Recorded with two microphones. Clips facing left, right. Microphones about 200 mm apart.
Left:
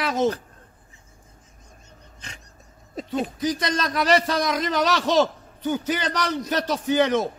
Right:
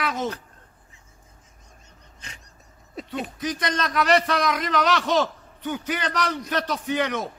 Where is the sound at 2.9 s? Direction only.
35° left (ahead or behind).